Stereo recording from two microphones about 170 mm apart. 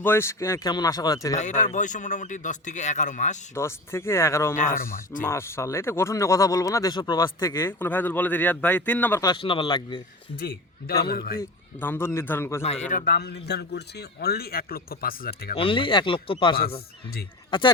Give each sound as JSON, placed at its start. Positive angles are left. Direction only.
{"t": 0.0, "sound": "speech", "side_deg": 15}
{"t": 1.4, "sound": "a man's voice", "side_deg": 45}
{"t": 3.5, "sound": "speech", "side_deg": 15}
{"t": 4.5, "sound": "a man's voice", "side_deg": 50}
{"t": 5.2, "sound": "speech", "side_deg": 15}
{"t": 7.3, "sound": "speech", "side_deg": 15}
{"t": 9.2, "sound": "speech", "side_deg": 30}
{"t": 10.4, "sound": "a man's voice", "side_deg": 60}
{"t": 11.8, "sound": "speech", "side_deg": 15}
{"t": 12.6, "sound": "a man's voice", "side_deg": 40}
{"t": 15.5, "sound": "speech", "side_deg": 30}